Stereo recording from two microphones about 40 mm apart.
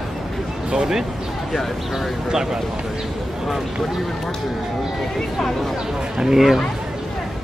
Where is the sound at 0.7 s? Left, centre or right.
Centre.